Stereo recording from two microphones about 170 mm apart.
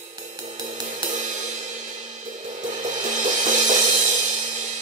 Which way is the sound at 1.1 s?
45° right (ahead or behind).